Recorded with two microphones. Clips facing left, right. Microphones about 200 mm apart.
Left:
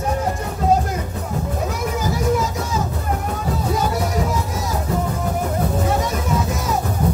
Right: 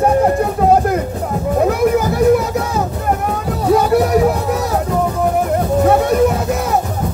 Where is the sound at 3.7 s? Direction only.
65° right (ahead or behind).